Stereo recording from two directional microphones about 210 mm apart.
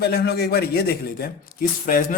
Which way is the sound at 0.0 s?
50° left (ahead or behind).